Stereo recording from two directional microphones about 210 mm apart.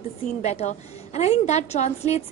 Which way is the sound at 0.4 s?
30° left (ahead or behind).